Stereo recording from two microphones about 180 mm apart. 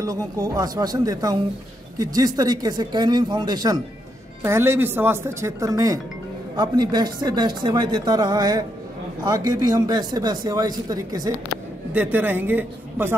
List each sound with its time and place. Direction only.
0.0 s speech: 20° right (ahead or behind)
11.9 s speech: 10° right (ahead or behind)